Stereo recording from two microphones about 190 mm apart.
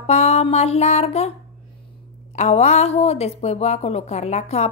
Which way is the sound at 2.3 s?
35° left (ahead or behind).